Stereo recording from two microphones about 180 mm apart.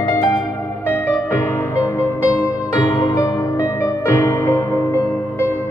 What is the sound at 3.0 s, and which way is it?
Music, 20° left (ahead or behind).